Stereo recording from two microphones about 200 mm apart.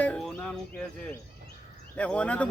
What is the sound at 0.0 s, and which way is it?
Speech, 5° left (ahead or behind).